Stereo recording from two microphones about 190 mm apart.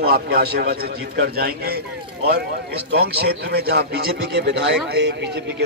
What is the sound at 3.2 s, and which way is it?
A man's voice, 55° right (ahead or behind).